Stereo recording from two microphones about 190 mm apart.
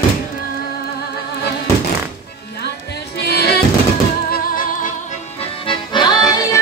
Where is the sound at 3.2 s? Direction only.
60° left (ahead or behind).